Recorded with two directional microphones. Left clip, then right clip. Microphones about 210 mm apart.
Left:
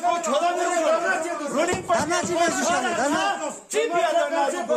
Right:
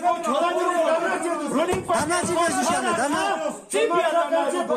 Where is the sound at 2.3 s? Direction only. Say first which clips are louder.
Left 1 dB; 55° left (ahead or behind).